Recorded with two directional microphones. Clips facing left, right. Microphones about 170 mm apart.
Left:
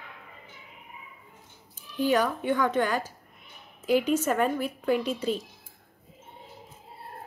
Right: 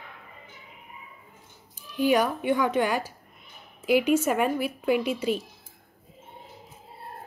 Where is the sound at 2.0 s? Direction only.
10° right (ahead or behind).